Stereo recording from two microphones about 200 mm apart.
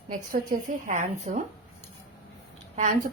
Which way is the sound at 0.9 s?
35° right (ahead or behind).